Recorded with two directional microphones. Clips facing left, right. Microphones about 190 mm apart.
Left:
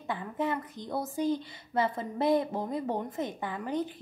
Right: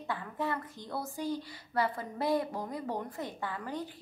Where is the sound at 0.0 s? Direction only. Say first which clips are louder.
Left 3 dB; 20° left (ahead or behind).